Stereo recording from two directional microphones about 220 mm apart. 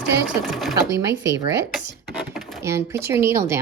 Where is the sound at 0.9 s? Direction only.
55° right (ahead or behind).